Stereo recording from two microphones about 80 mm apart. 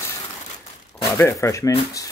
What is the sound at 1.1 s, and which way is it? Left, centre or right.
Speech, left.